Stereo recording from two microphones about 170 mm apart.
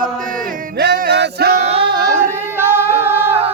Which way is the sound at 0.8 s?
65° right (ahead or behind).